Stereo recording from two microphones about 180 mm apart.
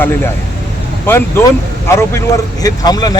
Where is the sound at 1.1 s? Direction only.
10° left (ahead or behind).